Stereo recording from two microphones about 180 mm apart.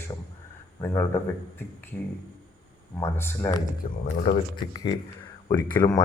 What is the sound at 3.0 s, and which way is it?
Speech, 15° left (ahead or behind).